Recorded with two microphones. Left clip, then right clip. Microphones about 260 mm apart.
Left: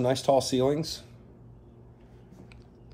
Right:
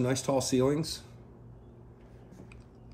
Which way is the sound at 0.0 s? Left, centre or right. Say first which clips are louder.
Left 6 dB; centre.